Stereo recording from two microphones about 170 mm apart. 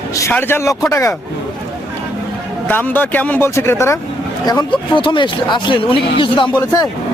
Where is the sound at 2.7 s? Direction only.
10° left (ahead or behind).